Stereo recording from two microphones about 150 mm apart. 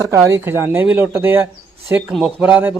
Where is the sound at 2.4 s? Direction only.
10° right (ahead or behind).